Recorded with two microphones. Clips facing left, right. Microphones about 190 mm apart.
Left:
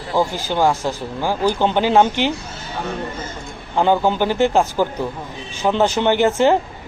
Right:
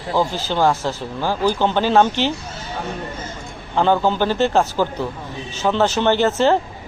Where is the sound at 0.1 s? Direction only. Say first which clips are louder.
Even; 15° left (ahead or behind).